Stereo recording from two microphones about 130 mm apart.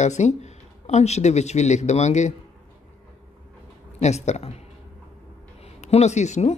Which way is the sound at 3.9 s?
60° left (ahead or behind).